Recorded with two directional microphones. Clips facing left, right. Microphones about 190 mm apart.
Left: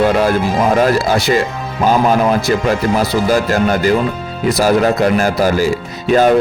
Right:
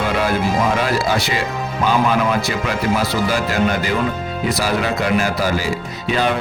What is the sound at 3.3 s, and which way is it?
Speech, 45° left (ahead or behind).